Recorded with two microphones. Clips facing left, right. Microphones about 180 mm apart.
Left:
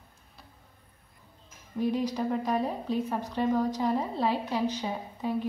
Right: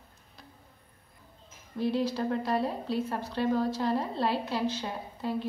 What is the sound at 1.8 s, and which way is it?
A woman's voice, 15° left (ahead or behind).